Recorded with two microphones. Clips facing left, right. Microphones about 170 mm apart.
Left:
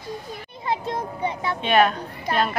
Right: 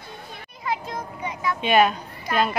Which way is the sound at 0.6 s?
30° left (ahead or behind).